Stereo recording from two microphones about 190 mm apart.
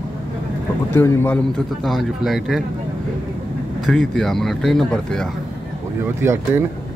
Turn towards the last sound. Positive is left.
turn(degrees=-15)  # may be behind; listen again after turning